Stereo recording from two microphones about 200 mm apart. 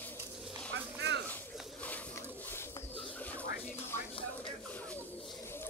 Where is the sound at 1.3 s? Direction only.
10° left (ahead or behind).